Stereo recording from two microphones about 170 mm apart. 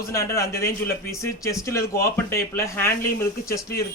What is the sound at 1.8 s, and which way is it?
Speech, 60° left (ahead or behind).